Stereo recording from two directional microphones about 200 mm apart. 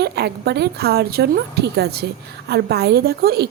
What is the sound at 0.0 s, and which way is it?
A woman's voice, 55° right (ahead or behind).